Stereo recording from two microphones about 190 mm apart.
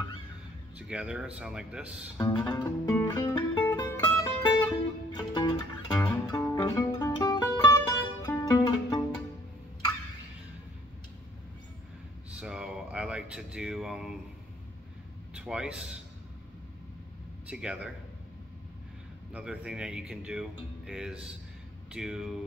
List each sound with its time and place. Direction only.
0.7 s speech: 5° right (ahead or behind)
2.1 s music: 20° left (ahead or behind)
12.4 s a sound: 5° right (ahead or behind)
15.3 s speech: 5° right (ahead or behind)
17.5 s speech: 5° right (ahead or behind)
19.3 s speech: 5° right (ahead or behind)